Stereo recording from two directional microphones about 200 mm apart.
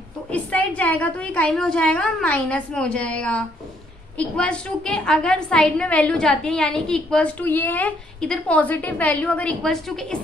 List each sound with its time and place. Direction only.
0.3 s a woman's voice: 5° left (ahead or behind)